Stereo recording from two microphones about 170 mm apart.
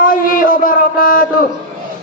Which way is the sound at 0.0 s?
55° left (ahead or behind).